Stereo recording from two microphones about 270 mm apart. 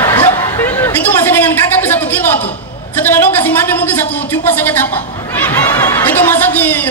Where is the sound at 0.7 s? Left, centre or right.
Centre.